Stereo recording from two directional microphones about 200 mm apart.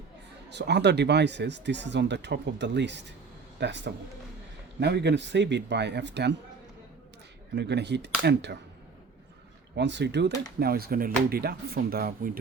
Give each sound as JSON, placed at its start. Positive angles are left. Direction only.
{"t": 0.5, "sound": "speech", "side_deg": -60}
{"t": 7.5, "sound": "speech", "side_deg": -55}
{"t": 9.7, "sound": "speech", "side_deg": -60}